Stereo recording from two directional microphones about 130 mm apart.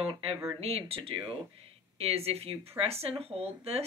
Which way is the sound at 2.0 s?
50° right (ahead or behind).